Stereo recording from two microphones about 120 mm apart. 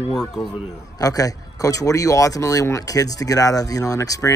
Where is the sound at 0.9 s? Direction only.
30° left (ahead or behind).